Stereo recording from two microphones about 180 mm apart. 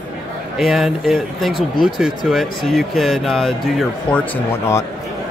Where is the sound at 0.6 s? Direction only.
Centre (ahead or behind).